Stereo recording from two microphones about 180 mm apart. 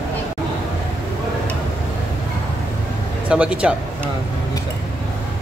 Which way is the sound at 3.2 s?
5° right (ahead or behind).